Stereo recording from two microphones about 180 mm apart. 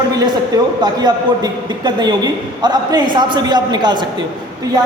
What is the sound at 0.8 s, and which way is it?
A man's voice, 20° right (ahead or behind).